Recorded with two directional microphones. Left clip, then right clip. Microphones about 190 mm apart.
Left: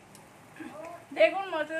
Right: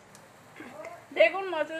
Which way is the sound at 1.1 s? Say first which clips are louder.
Right 1 dB; 40° right (ahead or behind).